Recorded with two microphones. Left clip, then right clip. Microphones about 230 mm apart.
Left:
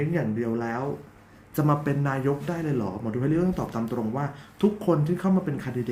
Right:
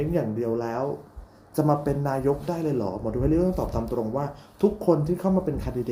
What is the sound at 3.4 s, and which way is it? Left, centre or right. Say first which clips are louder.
Speech: right 3 dB; centre.